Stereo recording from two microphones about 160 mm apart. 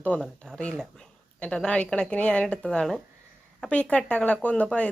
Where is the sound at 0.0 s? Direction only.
10° left (ahead or behind).